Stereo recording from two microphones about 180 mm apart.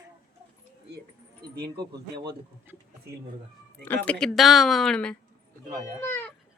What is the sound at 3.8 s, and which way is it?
Speech, 10° left (ahead or behind).